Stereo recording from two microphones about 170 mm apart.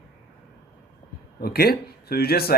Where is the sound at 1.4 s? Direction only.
65° left (ahead or behind).